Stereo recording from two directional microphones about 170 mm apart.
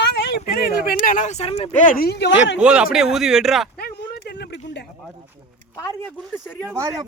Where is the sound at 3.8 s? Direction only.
70° left (ahead or behind); by 4.8 s 90° left.